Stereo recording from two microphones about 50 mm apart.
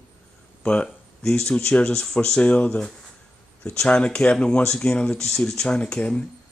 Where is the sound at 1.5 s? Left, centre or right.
Left.